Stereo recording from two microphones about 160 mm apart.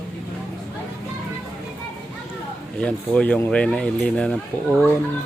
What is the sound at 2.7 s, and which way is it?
Speech, 5° left (ahead or behind).